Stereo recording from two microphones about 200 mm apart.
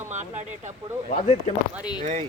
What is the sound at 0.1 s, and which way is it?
Speech, 35° right (ahead or behind).